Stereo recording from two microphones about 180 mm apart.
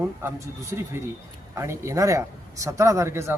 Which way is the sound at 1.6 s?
15° right (ahead or behind).